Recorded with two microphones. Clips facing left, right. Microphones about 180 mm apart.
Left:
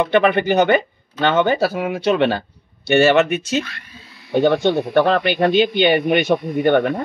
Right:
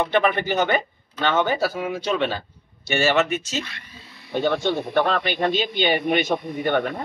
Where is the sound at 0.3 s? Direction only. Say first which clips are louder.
Left 7 dB; 65° left (ahead or behind).